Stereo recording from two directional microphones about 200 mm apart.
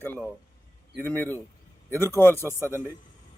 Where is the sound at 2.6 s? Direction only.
10° right (ahead or behind).